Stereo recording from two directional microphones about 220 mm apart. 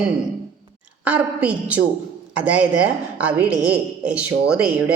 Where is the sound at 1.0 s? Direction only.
5° right (ahead or behind).